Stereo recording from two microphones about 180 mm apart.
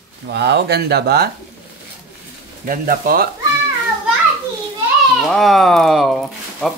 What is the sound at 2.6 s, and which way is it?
Speech, 50° right (ahead or behind).